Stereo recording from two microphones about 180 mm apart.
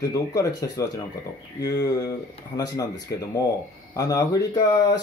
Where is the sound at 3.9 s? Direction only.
20° left (ahead or behind).